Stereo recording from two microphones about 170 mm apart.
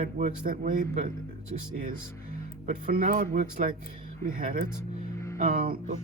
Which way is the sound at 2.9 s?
55° right (ahead or behind).